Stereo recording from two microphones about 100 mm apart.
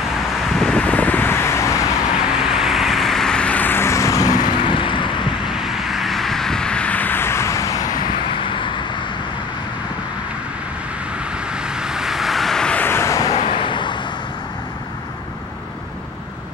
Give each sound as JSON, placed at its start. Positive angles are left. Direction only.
{"t": 0.6, "sound": "vehicle", "side_deg": 5}
{"t": 2.4, "sound": "vehicle", "side_deg": -5}
{"t": 5.9, "sound": "vehicle", "side_deg": 0}
{"t": 8.3, "sound": "vehicle", "side_deg": 55}
{"t": 11.5, "sound": "vehicle", "side_deg": -5}
{"t": 12.8, "sound": "a sound", "side_deg": 25}
{"t": 13.3, "sound": "vehicle", "side_deg": 75}